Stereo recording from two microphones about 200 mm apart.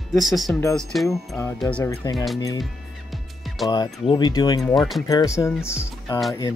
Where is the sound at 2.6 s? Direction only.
Centre (ahead or behind).